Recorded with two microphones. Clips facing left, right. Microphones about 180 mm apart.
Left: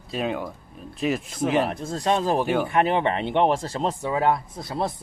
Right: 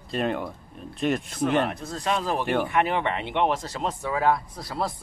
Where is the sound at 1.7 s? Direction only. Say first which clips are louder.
Left 4 dB; 25° left (ahead or behind).